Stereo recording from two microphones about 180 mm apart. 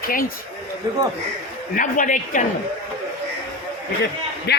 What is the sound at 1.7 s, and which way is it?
Speech, 45° left (ahead or behind).